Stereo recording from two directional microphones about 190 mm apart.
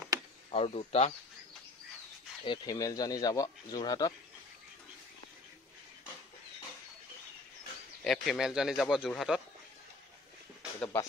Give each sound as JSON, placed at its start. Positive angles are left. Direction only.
{"t": 0.5, "sound": "speech", "side_deg": 30}
{"t": 2.4, "sound": "speech", "side_deg": 25}
{"t": 8.0, "sound": "speech", "side_deg": 0}
{"t": 10.8, "sound": "speech", "side_deg": 10}